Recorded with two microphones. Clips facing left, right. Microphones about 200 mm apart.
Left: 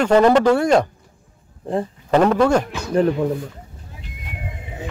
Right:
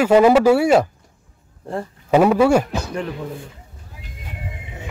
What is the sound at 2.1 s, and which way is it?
Speech, 10° right (ahead or behind).